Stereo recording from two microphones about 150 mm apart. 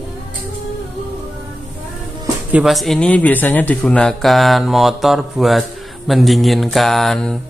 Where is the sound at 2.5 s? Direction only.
Centre (ahead or behind).